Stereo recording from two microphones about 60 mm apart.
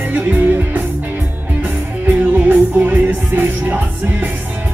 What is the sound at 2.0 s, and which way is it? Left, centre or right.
Music, right.